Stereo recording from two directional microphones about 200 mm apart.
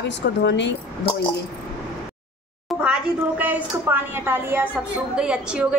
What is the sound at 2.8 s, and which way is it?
A woman's voice, 10° right (ahead or behind).